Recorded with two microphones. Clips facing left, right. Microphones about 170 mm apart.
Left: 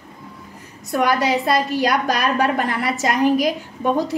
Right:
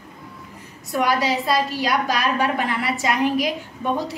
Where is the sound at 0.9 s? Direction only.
50° left (ahead or behind).